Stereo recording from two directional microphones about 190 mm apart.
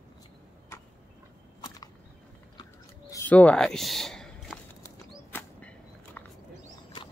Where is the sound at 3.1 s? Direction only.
10° left (ahead or behind).